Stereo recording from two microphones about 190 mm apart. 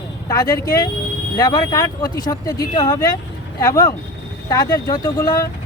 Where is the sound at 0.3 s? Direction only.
20° left (ahead or behind).